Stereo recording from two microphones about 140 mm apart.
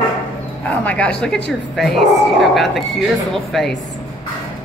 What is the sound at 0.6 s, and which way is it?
Speech, 10° left (ahead or behind).